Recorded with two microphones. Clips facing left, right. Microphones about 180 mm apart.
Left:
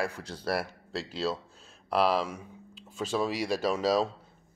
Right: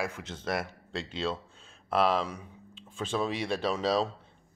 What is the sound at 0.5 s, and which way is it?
Speech, 5° left (ahead or behind).